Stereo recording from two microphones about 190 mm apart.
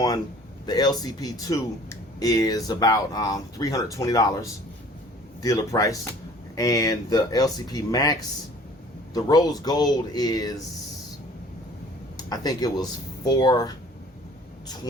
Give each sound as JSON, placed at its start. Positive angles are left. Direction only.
{"t": 0.6, "sound": "a man's voice", "side_deg": 20}
{"t": 12.1, "sound": "speech", "side_deg": 20}